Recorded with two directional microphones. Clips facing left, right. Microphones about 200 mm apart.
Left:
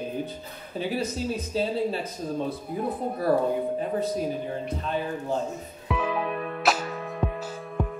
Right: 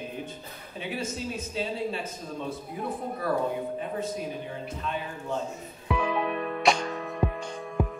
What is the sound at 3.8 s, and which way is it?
Speech, 35° left (ahead or behind).